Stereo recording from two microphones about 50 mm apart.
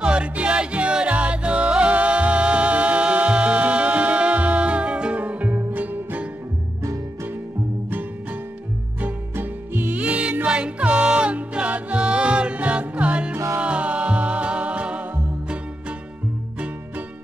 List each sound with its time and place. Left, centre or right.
0.0 s music: right
9.3 s music: right
9.9 s music: right